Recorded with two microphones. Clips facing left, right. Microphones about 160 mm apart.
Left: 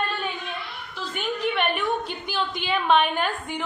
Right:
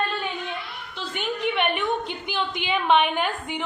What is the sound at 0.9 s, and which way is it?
A woman's voice, 20° right (ahead or behind).